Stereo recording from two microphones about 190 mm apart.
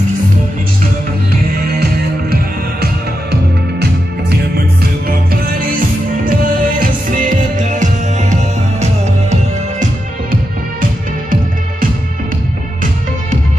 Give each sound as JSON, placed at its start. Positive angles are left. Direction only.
{"t": 5.0, "sound": "music", "side_deg": -50}